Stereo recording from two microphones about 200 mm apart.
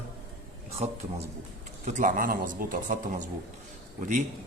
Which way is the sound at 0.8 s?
35° right (ahead or behind).